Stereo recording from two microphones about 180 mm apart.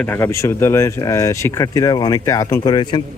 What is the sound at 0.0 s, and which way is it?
A man's voice, 10° left (ahead or behind).